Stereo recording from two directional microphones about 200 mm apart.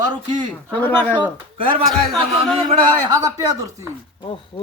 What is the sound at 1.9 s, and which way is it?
Speech, centre (ahead or behind).